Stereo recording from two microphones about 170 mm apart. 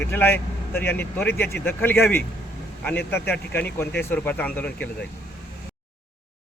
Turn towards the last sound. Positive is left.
turn(degrees=10)  # may be behind; listen again after turning